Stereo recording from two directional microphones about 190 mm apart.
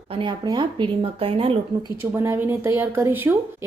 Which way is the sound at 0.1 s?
25° right (ahead or behind).